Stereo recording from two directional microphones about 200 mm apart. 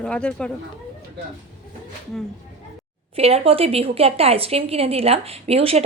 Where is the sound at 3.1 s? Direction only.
30° right (ahead or behind).